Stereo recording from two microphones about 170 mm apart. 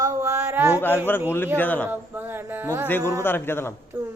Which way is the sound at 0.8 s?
10° left (ahead or behind).